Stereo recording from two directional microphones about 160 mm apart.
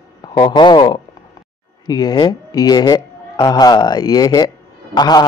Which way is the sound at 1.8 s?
25° left (ahead or behind).